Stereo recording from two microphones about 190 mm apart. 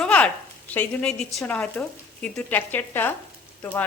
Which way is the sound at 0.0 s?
5° left (ahead or behind).